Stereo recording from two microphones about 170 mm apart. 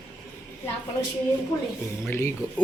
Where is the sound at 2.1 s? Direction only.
15° left (ahead or behind).